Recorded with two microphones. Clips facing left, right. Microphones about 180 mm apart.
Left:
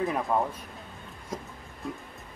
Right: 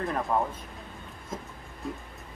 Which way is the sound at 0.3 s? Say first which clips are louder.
Even; 10° left (ahead or behind).